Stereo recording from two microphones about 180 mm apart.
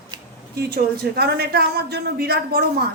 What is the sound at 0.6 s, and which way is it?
A woman's voice, 65° right (ahead or behind).